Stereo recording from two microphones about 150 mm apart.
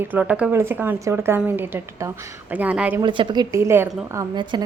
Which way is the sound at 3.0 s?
35° right (ahead or behind).